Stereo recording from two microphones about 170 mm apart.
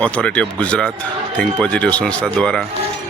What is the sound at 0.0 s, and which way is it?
Speech, 5° left (ahead or behind).